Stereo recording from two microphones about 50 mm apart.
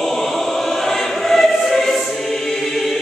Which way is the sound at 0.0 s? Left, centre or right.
Centre.